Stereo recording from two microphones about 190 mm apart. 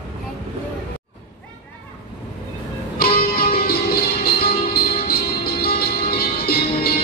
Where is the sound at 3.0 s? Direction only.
50° left (ahead or behind).